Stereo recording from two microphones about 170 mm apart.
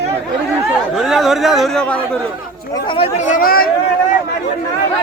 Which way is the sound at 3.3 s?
60° left (ahead or behind).